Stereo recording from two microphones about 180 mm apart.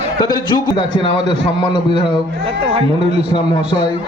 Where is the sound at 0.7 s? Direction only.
25° left (ahead or behind).